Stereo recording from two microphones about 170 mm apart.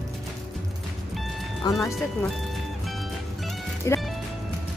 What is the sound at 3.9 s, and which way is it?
Music, 15° left (ahead or behind).